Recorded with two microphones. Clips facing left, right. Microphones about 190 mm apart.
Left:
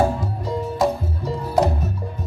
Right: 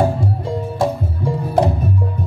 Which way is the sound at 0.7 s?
30° right (ahead or behind).